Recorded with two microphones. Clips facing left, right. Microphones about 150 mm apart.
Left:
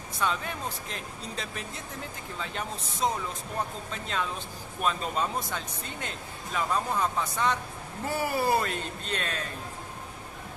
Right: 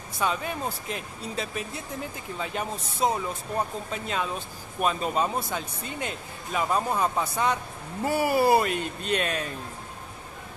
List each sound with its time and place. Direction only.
0.2 s speech: 10° right (ahead or behind)